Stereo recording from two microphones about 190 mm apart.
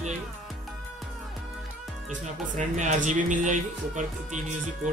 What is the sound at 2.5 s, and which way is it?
Speech, 40° right (ahead or behind).